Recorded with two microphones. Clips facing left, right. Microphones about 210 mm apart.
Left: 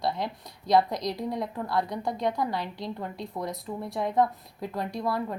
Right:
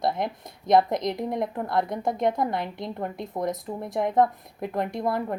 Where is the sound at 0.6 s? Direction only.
20° right (ahead or behind).